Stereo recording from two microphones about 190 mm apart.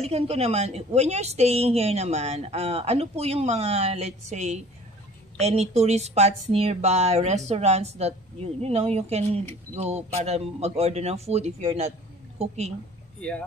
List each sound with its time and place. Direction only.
0.0 s a woman's voice: 30° right (ahead or behind)